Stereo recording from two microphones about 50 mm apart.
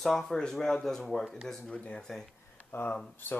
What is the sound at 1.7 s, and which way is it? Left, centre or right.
Speech, left.